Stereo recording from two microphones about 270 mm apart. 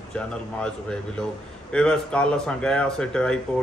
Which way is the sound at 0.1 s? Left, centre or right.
Centre.